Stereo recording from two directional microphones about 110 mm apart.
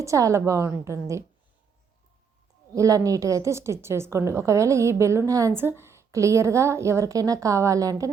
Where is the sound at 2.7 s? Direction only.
30° right (ahead or behind).